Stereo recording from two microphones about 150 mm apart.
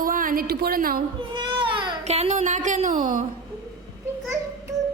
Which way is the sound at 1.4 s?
35° right (ahead or behind).